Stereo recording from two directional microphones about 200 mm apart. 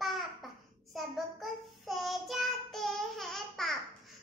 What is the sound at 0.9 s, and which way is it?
Child singing, centre (ahead or behind).